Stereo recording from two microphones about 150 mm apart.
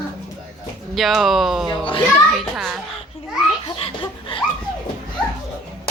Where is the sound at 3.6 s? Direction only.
35° left (ahead or behind).